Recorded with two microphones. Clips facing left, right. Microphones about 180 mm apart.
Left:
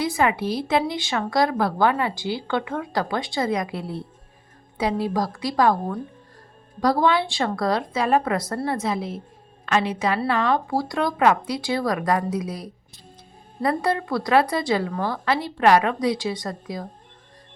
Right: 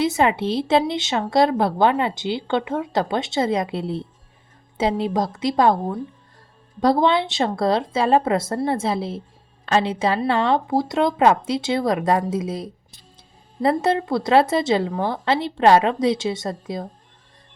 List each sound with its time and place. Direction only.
0.0 s speech: 25° right (ahead or behind)